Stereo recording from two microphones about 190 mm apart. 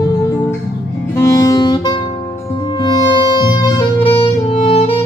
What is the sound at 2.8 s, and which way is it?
Saxophone, 20° left (ahead or behind).